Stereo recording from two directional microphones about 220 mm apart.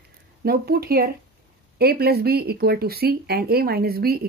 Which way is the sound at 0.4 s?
45° right (ahead or behind).